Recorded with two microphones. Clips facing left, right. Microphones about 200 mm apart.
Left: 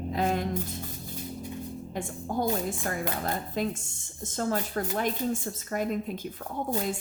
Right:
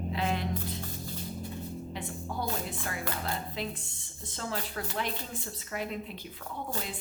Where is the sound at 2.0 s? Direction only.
45° left (ahead or behind).